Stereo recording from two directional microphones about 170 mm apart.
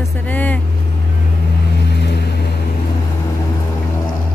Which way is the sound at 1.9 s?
80° left.